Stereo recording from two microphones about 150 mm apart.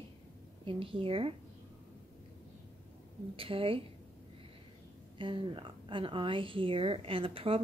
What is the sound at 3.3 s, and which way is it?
Speech, 35° right (ahead or behind).